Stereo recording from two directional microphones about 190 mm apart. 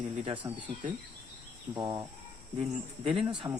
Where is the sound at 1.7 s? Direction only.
20° right (ahead or behind).